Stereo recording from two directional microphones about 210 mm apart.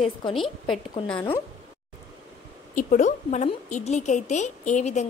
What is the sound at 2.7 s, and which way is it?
A woman's voice, 35° left (ahead or behind).